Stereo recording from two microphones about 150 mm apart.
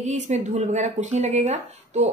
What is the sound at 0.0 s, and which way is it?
A woman's voice, 55° right (ahead or behind).